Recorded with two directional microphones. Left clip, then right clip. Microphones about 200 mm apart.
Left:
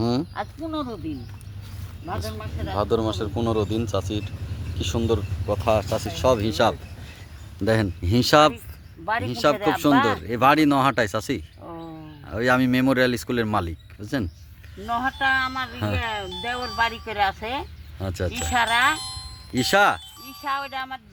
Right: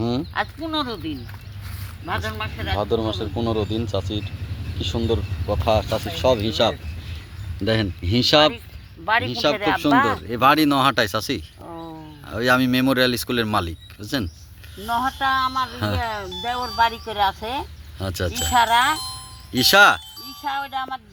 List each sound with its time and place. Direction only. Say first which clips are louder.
0.0 s speech: right 2 dB; 5° left (ahead or behind)
14.8 s speech: right 1 dB; 20° left (ahead or behind)
15.7 s speech: right 2 dB; 5° left (ahead or behind)
16.0 s speech: right 2 dB; 15° left (ahead or behind)
17.9 s speech: right 2 dB; 5° left (ahead or behind)
18.5 s speech: right 3 dB; 15° left (ahead or behind)
18.9 s speech: right 2 dB; 15° right (ahead or behind)
19.5 s speech: right 5 dB; 5° left (ahead or behind)
20.4 s speech: right 2 dB; 20° left (ahead or behind)